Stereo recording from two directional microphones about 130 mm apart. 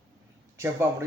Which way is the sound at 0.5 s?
20° right (ahead or behind).